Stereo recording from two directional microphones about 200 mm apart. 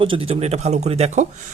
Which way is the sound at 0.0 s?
25° right (ahead or behind).